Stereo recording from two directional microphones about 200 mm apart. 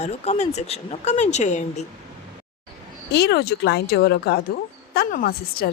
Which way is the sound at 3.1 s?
55° left (ahead or behind).